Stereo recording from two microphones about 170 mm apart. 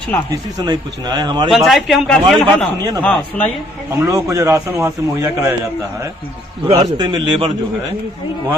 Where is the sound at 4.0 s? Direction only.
20° right (ahead or behind).